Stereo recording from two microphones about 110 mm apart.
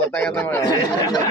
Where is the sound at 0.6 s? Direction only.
35° left (ahead or behind).